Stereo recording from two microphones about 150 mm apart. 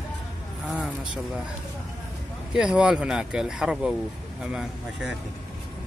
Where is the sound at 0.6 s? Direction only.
5° right (ahead or behind).